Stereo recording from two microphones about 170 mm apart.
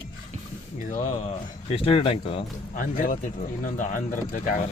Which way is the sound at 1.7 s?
35° left (ahead or behind).